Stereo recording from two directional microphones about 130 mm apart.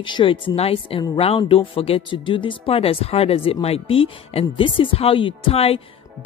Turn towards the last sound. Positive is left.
turn(degrees=50)  # may be behind; listen again after turning